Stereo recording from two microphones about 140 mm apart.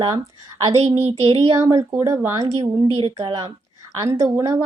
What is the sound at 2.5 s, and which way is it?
Speech, 45° right (ahead or behind).